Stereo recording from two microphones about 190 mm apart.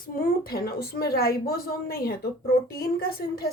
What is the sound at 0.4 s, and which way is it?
Speech, 55° left (ahead or behind).